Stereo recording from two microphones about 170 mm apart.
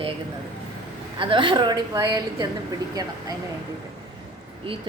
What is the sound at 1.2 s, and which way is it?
Speech, 30° right (ahead or behind).